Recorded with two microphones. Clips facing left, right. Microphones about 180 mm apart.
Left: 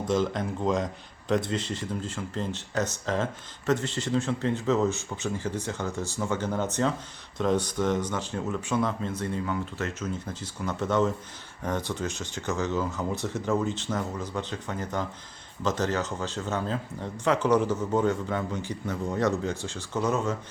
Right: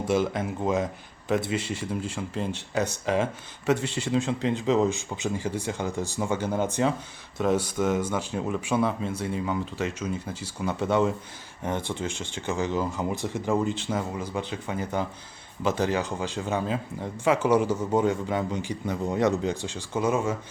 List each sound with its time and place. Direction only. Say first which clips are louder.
0.0 s speech: right 1 dB; 10° right (ahead or behind)
11.6 s speech: right 1 dB; 25° right (ahead or behind)
12.5 s speech: right 1 dB; 15° right (ahead or behind)